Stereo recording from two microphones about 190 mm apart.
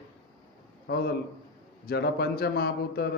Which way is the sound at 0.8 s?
55° left (ahead or behind).